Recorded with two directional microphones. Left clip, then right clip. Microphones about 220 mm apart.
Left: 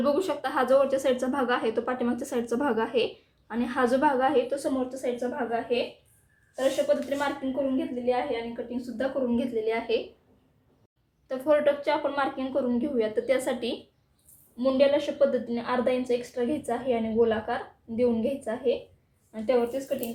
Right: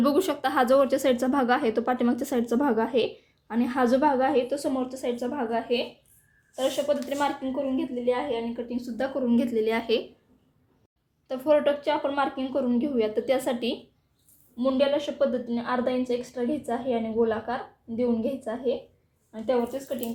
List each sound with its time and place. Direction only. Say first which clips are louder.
0.0 s a woman's voice: right 2 dB; 40° right (ahead or behind)
11.3 s a woman's voice: right 1 dB; 25° right (ahead or behind)
14.5 s a woman's voice: left 1 dB; 15° right (ahead or behind)